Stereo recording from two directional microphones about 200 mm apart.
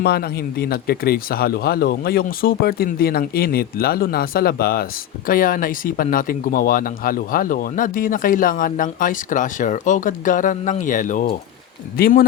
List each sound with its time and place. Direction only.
0.0 s speech: 55° left (ahead or behind)